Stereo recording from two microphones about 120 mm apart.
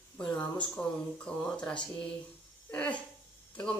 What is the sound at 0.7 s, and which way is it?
Speech, 10° left (ahead or behind).